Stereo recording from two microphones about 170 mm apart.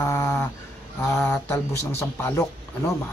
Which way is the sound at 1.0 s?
15° left (ahead or behind).